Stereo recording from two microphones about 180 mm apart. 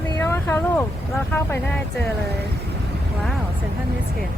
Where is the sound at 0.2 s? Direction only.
15° left (ahead or behind).